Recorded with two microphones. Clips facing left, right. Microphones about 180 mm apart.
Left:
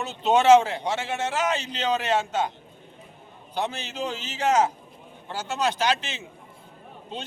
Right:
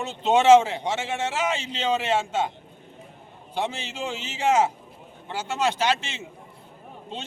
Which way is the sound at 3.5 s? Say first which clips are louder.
Even; 25° right (ahead or behind).